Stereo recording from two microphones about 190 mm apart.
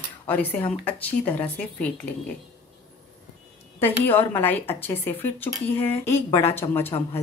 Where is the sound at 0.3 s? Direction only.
10° left (ahead or behind).